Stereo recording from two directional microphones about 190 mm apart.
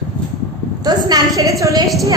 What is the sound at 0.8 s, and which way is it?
A woman's voice, 20° right (ahead or behind).